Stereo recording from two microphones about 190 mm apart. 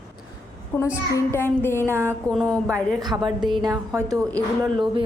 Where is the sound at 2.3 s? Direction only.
5° left (ahead or behind).